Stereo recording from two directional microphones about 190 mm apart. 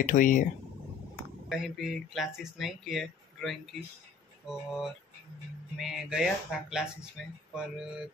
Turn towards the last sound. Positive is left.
turn(degrees=0)  # may be behind; listen again after turning